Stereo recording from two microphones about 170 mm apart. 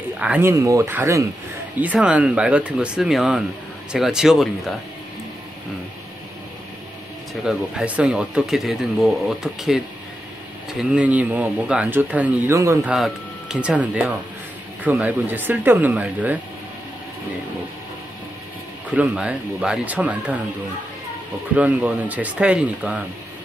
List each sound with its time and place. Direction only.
0.2 s speech: 10° right (ahead or behind)
7.4 s speech: 5° right (ahead or behind)
12.9 s speech: 5° right (ahead or behind)
18.9 s speech: 10° right (ahead or behind)
21.5 s speech: 10° right (ahead or behind)